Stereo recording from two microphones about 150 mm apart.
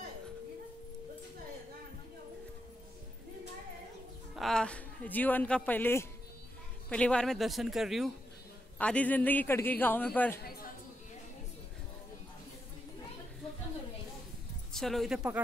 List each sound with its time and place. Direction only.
4.4 s a man's voice: 5° left (ahead or behind)
8.7 s a man's voice: 10° left (ahead or behind)
10.4 s a sound: 90° left
14.7 s speech: centre (ahead or behind)